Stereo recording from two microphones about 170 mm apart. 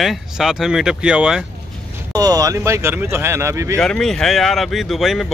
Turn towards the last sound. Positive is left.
turn(degrees=0)  # may be behind; listen again after turning